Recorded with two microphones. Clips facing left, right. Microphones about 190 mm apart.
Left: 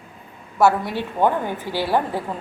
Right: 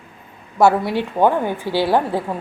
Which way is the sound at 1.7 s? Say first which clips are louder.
Right 7 dB; 15° left (ahead or behind).